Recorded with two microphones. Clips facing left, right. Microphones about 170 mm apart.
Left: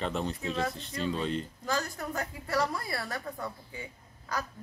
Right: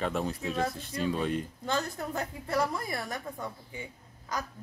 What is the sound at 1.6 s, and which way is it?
A woman's voice, 25° right (ahead or behind).